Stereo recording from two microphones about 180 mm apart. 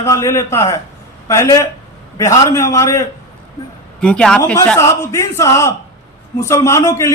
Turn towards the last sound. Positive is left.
turn(degrees=15)  # may be behind; listen again after turning